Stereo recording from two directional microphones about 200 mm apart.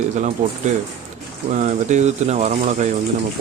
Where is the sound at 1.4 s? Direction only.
35° right (ahead or behind).